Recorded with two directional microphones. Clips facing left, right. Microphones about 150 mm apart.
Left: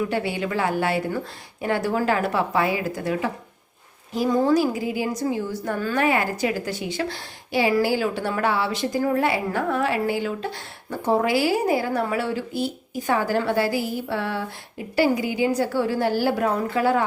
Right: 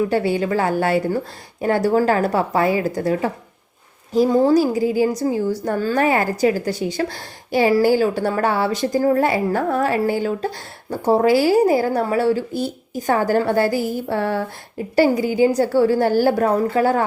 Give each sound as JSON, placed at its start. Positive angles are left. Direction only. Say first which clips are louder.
{"t": 0.1, "sound": "a woman's voice", "louder": "right 6 dB", "side_deg": -40}